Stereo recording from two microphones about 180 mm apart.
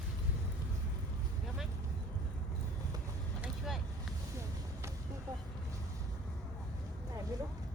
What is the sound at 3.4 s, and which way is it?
Vehicle, centre (ahead or behind).